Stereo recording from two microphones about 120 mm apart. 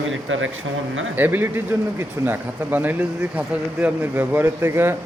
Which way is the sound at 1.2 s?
15° right (ahead or behind).